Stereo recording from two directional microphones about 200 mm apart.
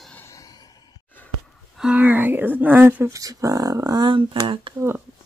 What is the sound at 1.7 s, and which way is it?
Speech, 5° right (ahead or behind).